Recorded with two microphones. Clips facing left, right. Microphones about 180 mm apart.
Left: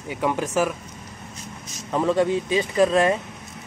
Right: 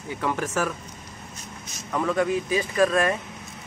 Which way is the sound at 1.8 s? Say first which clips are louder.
Left 3 dB; 25° left (ahead or behind).